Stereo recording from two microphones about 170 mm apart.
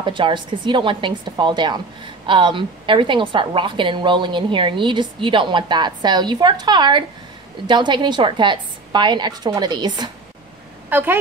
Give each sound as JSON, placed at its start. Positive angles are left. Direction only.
{"t": 0.0, "sound": "a woman's voice", "side_deg": -30}
{"t": 10.9, "sound": "speech", "side_deg": -10}